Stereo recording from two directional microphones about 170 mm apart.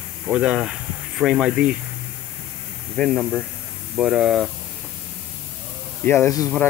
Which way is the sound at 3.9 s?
5° right (ahead or behind).